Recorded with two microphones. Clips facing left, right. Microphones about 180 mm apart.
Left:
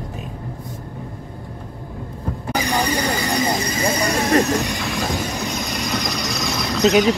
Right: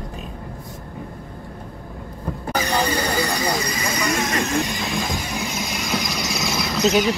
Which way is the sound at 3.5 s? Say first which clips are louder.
Left 3 dB; 30° left (ahead or behind).